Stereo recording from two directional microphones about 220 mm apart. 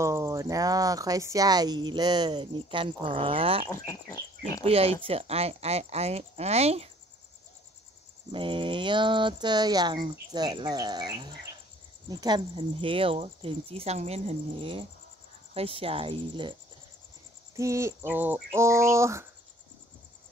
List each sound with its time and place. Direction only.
0.0 s speech: 15° right (ahead or behind)
3.6 s speech: 15° left (ahead or behind)
4.6 s speech: 25° right (ahead or behind)
8.3 s speech: 20° right (ahead or behind)
17.6 s a sound: 15° right (ahead or behind)